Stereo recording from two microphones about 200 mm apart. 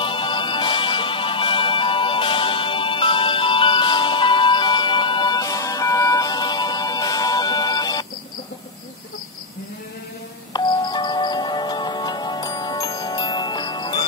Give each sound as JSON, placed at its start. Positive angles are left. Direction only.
{"t": 0.0, "sound": "music", "side_deg": 25}
{"t": 10.5, "sound": "music", "side_deg": 20}